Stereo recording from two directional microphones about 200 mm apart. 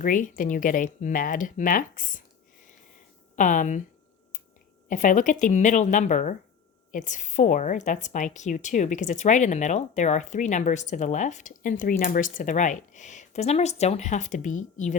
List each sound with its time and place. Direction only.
0.0 s a woman's voice: 40° left (ahead or behind)
3.3 s a woman's voice: 40° left (ahead or behind)
4.9 s a woman's voice: 40° left (ahead or behind)